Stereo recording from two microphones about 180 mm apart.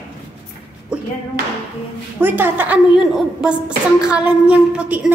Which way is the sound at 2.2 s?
10° right (ahead or behind).